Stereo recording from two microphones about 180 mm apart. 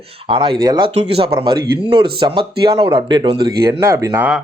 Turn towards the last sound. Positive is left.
turn(degrees=-10)  # may be behind; listen again after turning